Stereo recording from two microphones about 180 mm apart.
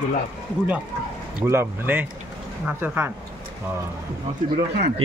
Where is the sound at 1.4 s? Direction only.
15° right (ahead or behind).